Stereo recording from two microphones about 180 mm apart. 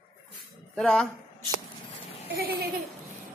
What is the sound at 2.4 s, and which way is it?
Speech, 55° right (ahead or behind).